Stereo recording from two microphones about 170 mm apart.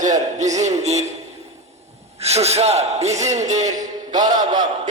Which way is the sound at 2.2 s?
40° right (ahead or behind).